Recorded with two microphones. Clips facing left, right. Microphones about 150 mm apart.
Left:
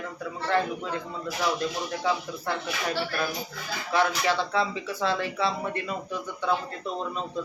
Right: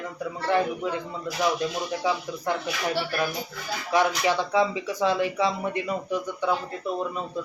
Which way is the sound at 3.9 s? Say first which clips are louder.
Right 2 dB; 15° right (ahead or behind).